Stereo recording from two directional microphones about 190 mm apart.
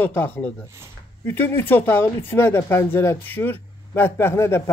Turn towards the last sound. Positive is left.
turn(degrees=15)  # may be behind; listen again after turning